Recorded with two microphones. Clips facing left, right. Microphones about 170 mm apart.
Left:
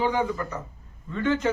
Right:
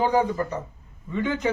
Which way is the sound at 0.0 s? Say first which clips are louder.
Right 3 dB; 40° right (ahead or behind).